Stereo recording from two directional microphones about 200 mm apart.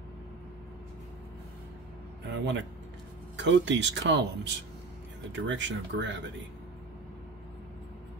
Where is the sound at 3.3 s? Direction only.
65° right (ahead or behind).